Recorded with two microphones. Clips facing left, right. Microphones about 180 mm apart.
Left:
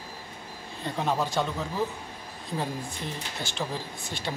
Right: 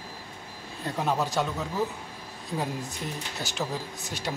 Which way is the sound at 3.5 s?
40° right (ahead or behind).